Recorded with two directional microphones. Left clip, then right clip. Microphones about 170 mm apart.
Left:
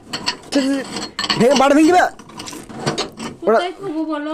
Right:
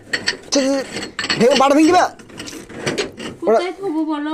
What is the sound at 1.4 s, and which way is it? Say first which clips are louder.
Speech: even; 40° left (ahead or behind).